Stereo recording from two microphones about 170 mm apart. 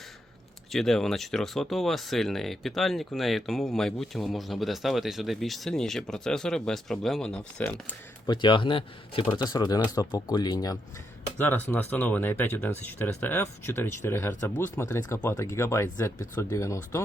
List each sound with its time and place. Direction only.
0.7 s speech: centre (ahead or behind)
8.3 s speech: 30° left (ahead or behind)
11.3 s speech: 10° left (ahead or behind)